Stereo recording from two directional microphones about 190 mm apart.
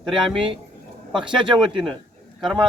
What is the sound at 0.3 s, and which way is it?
Speech, 25° right (ahead or behind).